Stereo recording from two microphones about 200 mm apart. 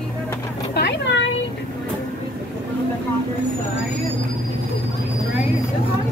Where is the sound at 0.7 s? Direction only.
60° left (ahead or behind).